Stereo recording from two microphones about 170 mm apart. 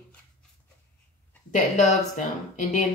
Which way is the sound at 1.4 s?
45° left (ahead or behind).